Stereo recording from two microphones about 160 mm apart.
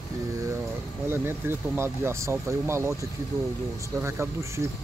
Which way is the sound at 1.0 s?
15° right (ahead or behind).